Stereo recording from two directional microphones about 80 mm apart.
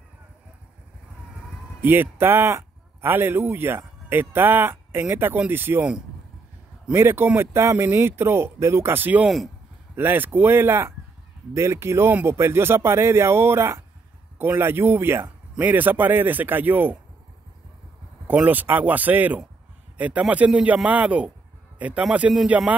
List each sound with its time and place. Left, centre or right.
1.8 s speech: right
6.9 s speech: right
18.5 s a man's voice: right